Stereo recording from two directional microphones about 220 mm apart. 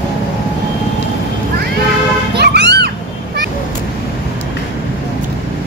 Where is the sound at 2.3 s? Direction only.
50° right (ahead or behind).